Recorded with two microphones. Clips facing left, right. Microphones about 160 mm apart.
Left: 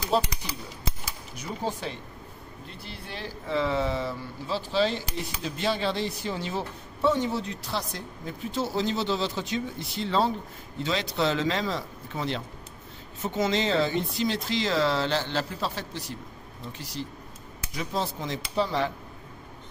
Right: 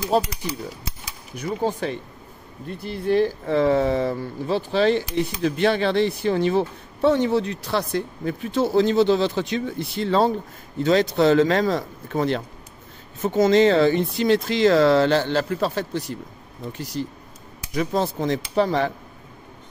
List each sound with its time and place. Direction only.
0.1 s speech: 45° right (ahead or behind)
1.3 s speech: 55° right (ahead or behind)